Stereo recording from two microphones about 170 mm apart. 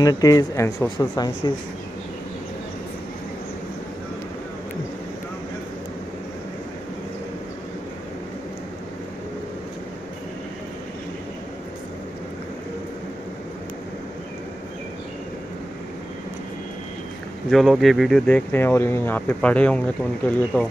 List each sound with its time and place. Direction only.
0.0 s speech: 20° left (ahead or behind)
17.5 s speech: centre (ahead or behind)